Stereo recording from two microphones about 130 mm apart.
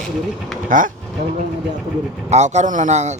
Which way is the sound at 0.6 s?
90° right.